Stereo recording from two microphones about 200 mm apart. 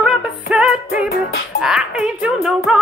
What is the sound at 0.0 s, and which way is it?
Music, 5° right (ahead or behind).